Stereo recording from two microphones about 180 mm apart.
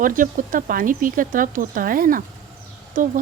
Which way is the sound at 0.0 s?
50° right (ahead or behind).